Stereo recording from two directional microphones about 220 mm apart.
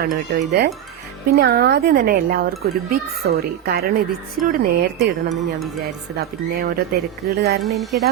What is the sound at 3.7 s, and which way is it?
Speech, 45° right (ahead or behind).